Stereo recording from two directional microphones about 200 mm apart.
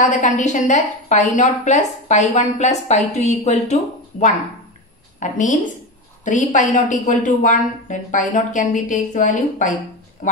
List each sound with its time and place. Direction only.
0.0 s a woman's voice: 40° left (ahead or behind)